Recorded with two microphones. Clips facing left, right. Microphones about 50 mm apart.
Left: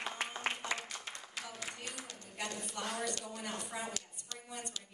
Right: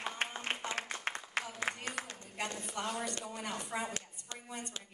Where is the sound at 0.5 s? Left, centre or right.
Right.